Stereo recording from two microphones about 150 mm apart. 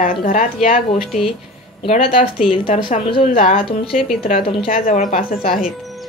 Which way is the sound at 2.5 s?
55° left (ahead or behind).